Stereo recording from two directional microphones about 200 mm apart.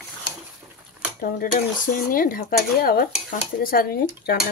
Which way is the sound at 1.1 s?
45° left (ahead or behind).